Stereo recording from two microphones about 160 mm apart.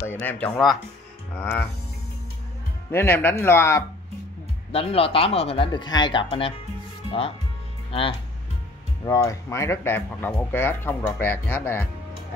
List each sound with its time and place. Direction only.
0.0 s speech: 10° left (ahead or behind)
2.9 s speech: 15° left (ahead or behind)
4.7 s speech: 35° left (ahead or behind)
9.0 s speech: 20° left (ahead or behind)